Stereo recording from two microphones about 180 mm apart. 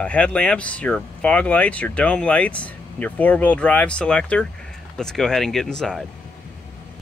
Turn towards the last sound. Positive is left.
turn(degrees=0)  # may be behind; listen again after turning